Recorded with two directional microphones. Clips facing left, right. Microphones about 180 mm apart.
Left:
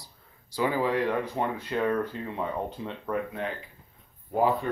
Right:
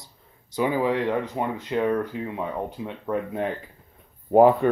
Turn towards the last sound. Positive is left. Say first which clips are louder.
# right 9 dB
turn(degrees=-55)  # may be behind; listen again after turning